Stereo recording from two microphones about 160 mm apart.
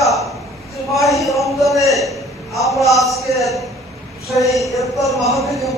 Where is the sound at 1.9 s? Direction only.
Centre (ahead or behind).